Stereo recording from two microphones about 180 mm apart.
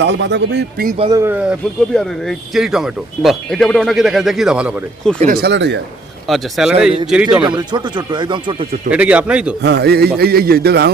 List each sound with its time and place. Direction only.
0.0 s a man's voice: 75° right (ahead or behind)
1.1 s speech: 15° right (ahead or behind)
5.2 s a man's voice: 55° right (ahead or behind); by 5.8 s 75° right (ahead or behind)
6.2 s speech: centre (ahead or behind)
7.4 s speech: 25° right (ahead or behind)
8.9 s speech: 5° right (ahead or behind)
9.6 s a man's voice: 65° right (ahead or behind)